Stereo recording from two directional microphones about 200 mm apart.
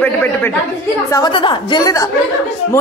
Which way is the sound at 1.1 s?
20° left (ahead or behind).